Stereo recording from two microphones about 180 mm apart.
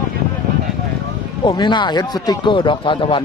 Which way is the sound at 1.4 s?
25° left (ahead or behind).